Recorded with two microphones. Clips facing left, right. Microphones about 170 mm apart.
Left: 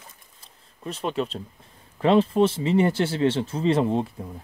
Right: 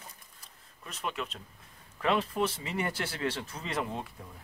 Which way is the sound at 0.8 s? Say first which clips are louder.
Left 10 dB; 30° left (ahead or behind).